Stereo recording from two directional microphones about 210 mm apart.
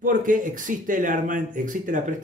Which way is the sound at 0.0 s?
40° right (ahead or behind).